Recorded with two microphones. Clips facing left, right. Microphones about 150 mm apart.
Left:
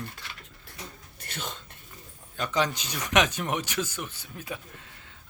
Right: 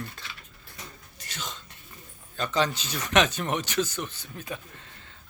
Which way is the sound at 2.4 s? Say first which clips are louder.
Right 1 dB; 10° left (ahead or behind).